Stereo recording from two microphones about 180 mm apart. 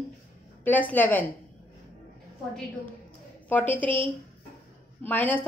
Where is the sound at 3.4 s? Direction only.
10° left (ahead or behind).